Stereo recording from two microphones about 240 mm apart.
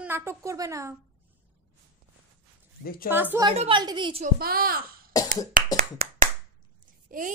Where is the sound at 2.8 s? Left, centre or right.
Left.